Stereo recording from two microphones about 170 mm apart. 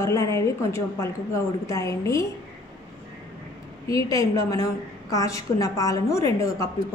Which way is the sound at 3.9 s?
20° left (ahead or behind).